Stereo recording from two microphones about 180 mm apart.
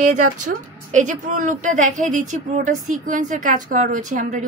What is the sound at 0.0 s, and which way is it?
A woman's voice, 45° right (ahead or behind).